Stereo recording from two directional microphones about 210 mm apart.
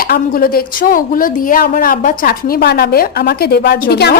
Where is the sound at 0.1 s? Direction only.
45° left (ahead or behind).